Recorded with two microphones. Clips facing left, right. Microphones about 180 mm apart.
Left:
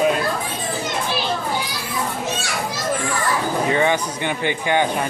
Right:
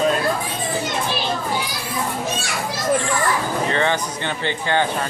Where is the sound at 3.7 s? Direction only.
15° left (ahead or behind).